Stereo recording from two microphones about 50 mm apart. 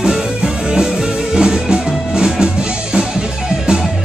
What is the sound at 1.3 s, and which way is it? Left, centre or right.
Music, centre.